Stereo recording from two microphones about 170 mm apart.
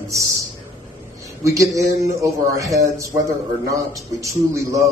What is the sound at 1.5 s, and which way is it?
A man's voice, 20° right (ahead or behind).